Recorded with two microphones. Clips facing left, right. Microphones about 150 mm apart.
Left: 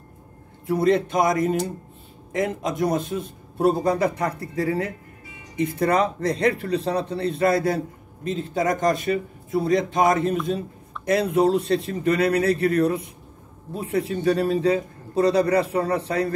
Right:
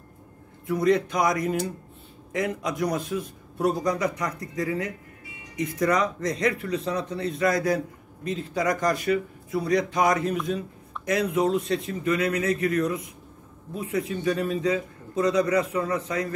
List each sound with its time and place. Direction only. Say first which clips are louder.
0.7 s a man's voice: left 2 dB; 30° left (ahead or behind)